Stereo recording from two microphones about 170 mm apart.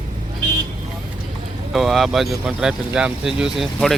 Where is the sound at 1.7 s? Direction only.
Centre (ahead or behind).